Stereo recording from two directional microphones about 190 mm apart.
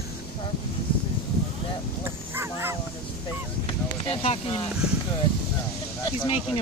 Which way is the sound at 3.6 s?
30° left (ahead or behind).